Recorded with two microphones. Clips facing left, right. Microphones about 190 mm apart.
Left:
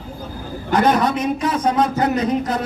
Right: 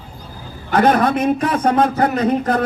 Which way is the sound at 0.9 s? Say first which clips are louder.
Right 3 dB; 55° right (ahead or behind).